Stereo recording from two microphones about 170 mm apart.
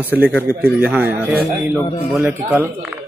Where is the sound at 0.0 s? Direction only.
10° right (ahead or behind).